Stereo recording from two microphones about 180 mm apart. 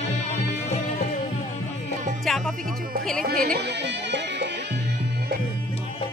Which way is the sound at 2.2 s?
Centre (ahead or behind).